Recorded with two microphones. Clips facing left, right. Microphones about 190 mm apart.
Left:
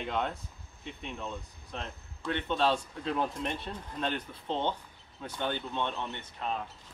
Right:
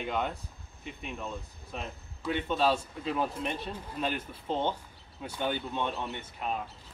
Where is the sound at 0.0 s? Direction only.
5° right (ahead or behind).